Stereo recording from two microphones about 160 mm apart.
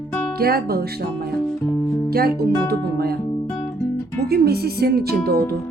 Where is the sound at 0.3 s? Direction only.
75° right (ahead or behind).